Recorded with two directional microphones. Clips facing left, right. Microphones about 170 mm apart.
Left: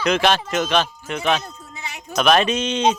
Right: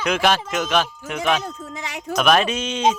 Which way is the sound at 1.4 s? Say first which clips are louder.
Right 5 dB; 90° right.